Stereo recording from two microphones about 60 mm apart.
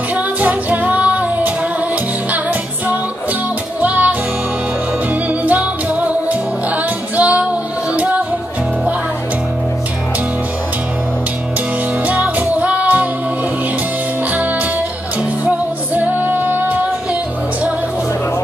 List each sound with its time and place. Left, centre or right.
0.1 s music: right
3.8 s music: right
5.4 s music: right
12.1 s music: right
15.4 s music: right